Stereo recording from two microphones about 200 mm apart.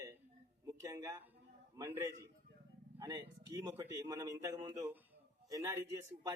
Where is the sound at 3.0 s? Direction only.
15° right (ahead or behind).